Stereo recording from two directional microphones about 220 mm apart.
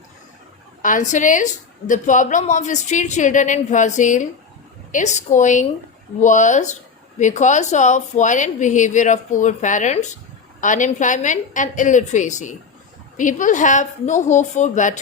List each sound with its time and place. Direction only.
0.8 s a woman's voice: 35° left (ahead or behind)